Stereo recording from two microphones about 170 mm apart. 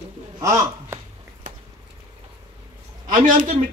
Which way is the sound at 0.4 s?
20° right (ahead or behind).